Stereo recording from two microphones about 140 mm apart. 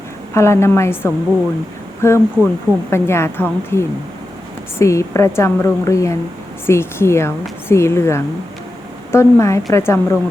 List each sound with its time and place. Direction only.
0.3 s a woman's voice: 20° left (ahead or behind)